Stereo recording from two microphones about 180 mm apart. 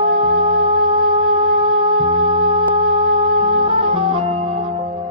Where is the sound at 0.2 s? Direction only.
35° right (ahead or behind).